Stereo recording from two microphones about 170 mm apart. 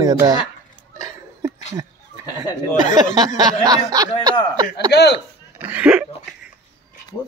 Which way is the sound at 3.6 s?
20° right (ahead or behind).